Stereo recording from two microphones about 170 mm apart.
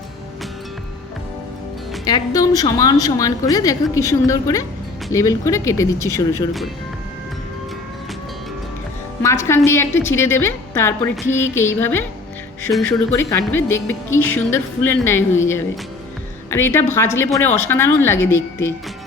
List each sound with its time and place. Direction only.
2.0 s a woman's voice: 20° left (ahead or behind)
9.2 s a woman's voice: 15° left (ahead or behind)